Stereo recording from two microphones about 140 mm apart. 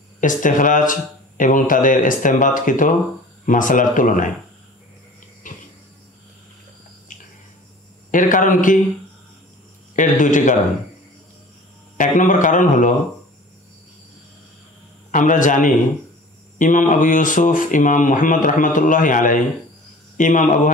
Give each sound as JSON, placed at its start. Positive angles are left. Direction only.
{"t": 0.2, "sound": "speech", "side_deg": 70}
{"t": 5.4, "sound": "a sound", "side_deg": 70}
{"t": 8.1, "sound": "speech", "side_deg": 70}
{"t": 9.9, "sound": "a man's voice", "side_deg": 65}
{"t": 12.0, "sound": "speech", "side_deg": 65}
{"t": 15.0, "sound": "speech", "side_deg": 65}